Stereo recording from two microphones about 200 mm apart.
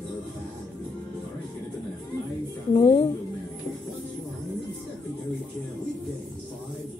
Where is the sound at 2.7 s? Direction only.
20° left (ahead or behind).